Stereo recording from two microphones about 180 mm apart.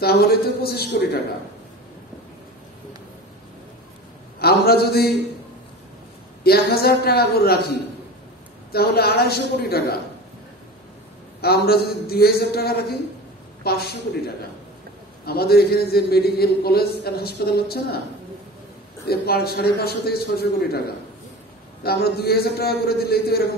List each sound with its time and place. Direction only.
0.0 s a man's voice: 60° left (ahead or behind)
4.4 s a man's voice: 60° left (ahead or behind)
6.4 s a man's voice: 60° left (ahead or behind)
11.4 s a man's voice: 60° left (ahead or behind)
19.0 s a man's voice: 60° left (ahead or behind)
21.8 s a man's voice: 60° left (ahead or behind)